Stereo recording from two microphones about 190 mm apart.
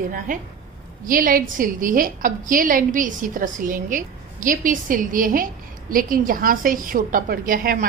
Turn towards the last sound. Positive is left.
turn(degrees=-45)  # may be behind; listen again after turning